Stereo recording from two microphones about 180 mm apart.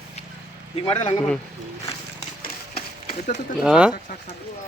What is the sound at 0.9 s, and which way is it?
Speech, 35° left (ahead or behind).